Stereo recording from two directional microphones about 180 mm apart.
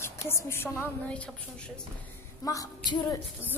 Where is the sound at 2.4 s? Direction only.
20° left (ahead or behind).